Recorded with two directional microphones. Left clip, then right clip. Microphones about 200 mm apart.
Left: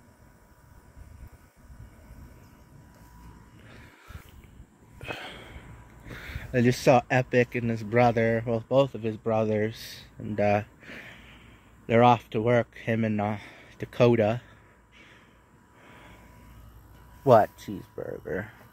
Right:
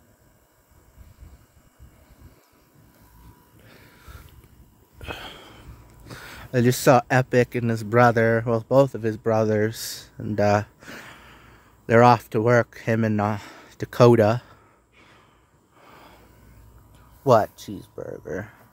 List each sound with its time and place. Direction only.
3.6 s a sound: 20° right (ahead or behind)
6.0 s speech: 15° right (ahead or behind)
8.5 s speech: 40° right (ahead or behind)
10.2 s speech: 25° right (ahead or behind)
17.2 s speech: 10° right (ahead or behind)